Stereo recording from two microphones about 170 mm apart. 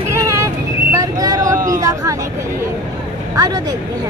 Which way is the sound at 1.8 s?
20° right (ahead or behind).